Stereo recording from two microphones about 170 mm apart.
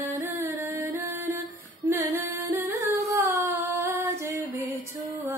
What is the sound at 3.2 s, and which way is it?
Female singing, 15° right (ahead or behind).